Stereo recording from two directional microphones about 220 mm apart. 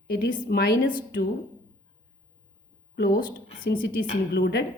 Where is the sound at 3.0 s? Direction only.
45° left (ahead or behind).